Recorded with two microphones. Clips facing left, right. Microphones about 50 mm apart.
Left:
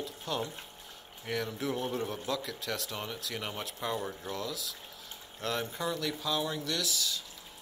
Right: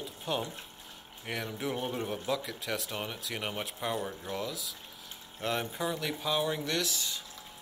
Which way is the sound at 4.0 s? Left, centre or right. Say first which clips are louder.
Right 1 dB; centre.